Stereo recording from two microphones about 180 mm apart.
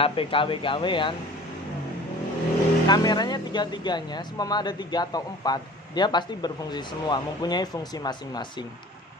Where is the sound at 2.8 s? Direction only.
25° left (ahead or behind).